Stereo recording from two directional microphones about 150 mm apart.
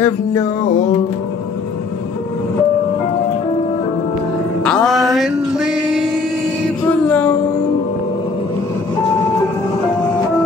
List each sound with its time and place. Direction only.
0.0 s music: 20° left (ahead or behind)
4.6 s male singing: 5° left (ahead or behind)
6.9 s music: 10° left (ahead or behind)